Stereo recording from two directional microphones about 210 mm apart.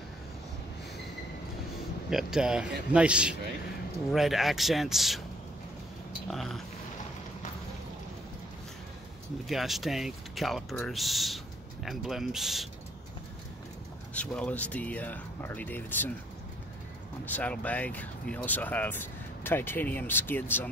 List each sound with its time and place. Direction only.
2.0 s speech: 5° right (ahead or behind)
6.3 s speech: centre (ahead or behind)
9.5 s speech: centre (ahead or behind)
14.1 s speech: 5° left (ahead or behind)
17.2 s speech: 10° left (ahead or behind)